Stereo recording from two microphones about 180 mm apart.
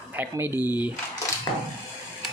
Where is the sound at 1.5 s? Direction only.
25° left (ahead or behind).